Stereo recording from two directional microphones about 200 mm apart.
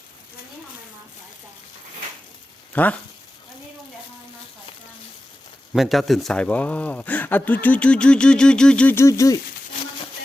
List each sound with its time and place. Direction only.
2.7 s speech: 5° left (ahead or behind)
5.7 s speech: centre (ahead or behind); by 9.4 s 15° left (ahead or behind)